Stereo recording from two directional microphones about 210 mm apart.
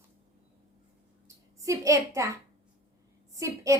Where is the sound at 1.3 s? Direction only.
15° right (ahead or behind).